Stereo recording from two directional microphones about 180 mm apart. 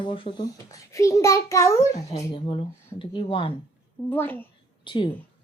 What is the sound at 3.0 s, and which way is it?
Speech, 30° left (ahead or behind).